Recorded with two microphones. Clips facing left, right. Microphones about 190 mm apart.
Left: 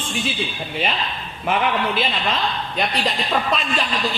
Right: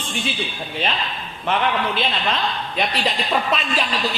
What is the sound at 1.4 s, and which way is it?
A man's voice, 5° left (ahead or behind).